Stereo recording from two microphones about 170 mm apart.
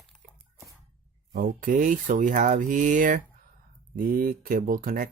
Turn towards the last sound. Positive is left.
turn(degrees=-55)  # may be behind; listen again after turning